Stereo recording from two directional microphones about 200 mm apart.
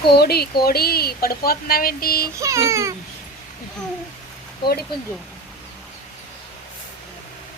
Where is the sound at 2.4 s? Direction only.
15° right (ahead or behind).